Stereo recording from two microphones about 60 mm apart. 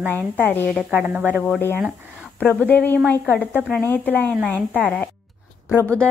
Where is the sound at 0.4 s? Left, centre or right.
Left.